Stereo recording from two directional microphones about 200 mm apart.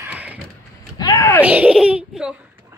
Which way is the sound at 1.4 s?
5° right (ahead or behind).